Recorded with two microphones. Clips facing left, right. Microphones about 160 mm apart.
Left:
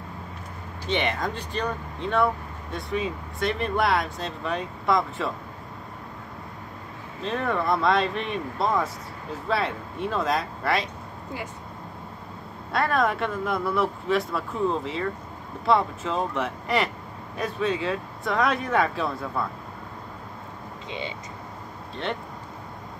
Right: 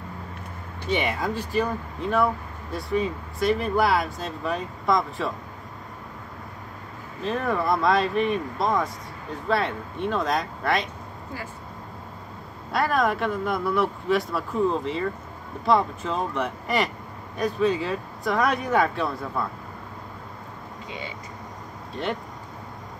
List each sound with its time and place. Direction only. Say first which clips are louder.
0.8 s speech: right 1 dB; 5° right (ahead or behind)
7.2 s speech: right 1 dB; 5° right (ahead or behind)
12.7 s speech: right 1 dB; centre (ahead or behind)